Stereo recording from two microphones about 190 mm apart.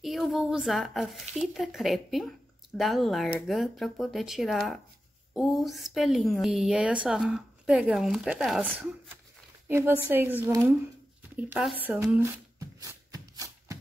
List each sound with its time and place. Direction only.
0.0 s speech: centre (ahead or behind)
9.7 s a woman's voice: 10° right (ahead or behind)
12.5 s shuffle: 15° right (ahead or behind)